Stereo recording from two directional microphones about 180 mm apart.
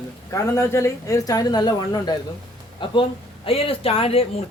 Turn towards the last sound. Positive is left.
turn(degrees=30)  # may be behind; listen again after turning